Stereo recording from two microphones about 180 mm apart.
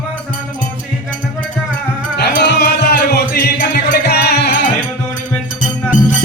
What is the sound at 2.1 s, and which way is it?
Music, 65° left (ahead or behind).